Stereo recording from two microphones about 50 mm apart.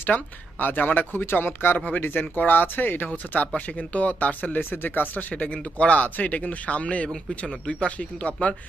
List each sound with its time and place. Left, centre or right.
0.0 s speech: left
1.2 s speech: left
5.3 s speech: left